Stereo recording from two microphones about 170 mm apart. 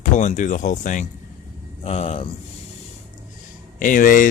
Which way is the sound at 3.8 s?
50° left (ahead or behind).